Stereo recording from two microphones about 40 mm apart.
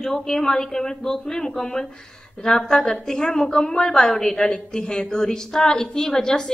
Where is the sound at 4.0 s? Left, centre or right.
Centre.